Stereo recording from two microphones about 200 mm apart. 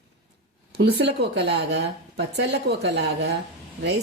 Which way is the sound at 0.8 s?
55° right (ahead or behind).